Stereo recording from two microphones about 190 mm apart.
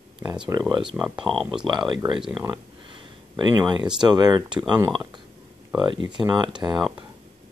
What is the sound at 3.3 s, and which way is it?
Speech, 25° right (ahead or behind).